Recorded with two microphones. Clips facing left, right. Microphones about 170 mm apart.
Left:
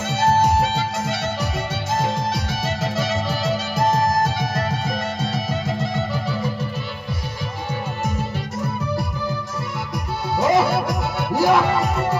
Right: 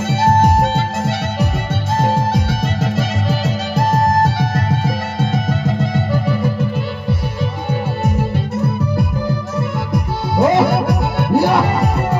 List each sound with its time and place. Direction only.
0.2 s music: 60° right (ahead or behind)
2.0 s music: 60° right (ahead or behind)
10.3 s music: 60° right (ahead or behind)